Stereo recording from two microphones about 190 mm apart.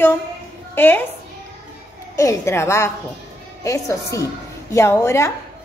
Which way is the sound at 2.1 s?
15° left (ahead or behind).